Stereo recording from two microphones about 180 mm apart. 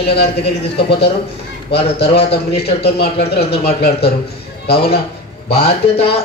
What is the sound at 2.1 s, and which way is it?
Speech, 35° left (ahead or behind).